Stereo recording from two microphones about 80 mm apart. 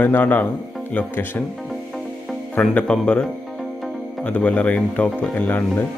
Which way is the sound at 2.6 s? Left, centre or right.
Centre.